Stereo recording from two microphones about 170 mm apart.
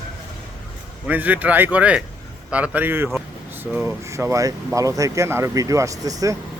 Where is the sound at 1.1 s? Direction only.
10° right (ahead or behind).